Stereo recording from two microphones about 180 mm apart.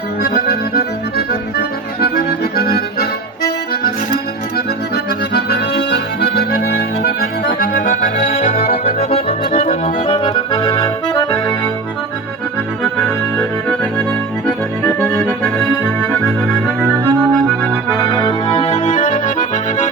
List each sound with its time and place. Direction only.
1.1 s accordion: 60° left (ahead or behind)
5.3 s accordion: 65° left (ahead or behind); by 11.5 s 20° left (ahead or behind)
12.8 s accordion: 10° left (ahead or behind)
14.8 s accordion: 15° left (ahead or behind)
15.8 s organ: 10° left (ahead or behind)
16.8 s music: 15° right (ahead or behind)
17.3 s accordion: centre (ahead or behind)
17.8 s accordion: 20° left (ahead or behind); by 19.9 s 45° left (ahead or behind)